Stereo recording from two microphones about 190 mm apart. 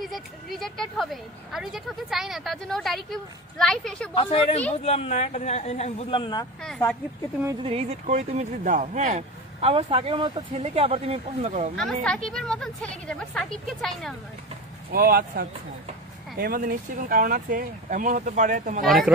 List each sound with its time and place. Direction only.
0.0 s speech: centre (ahead or behind)
4.1 s speech: 30° left (ahead or behind)
6.6 s speech: 5° left (ahead or behind)
7.6 s speech: 30° right (ahead or behind)
11.7 s speech: 5° left (ahead or behind)
14.9 s speech: 50° right (ahead or behind)
18.9 s speech: centre (ahead or behind)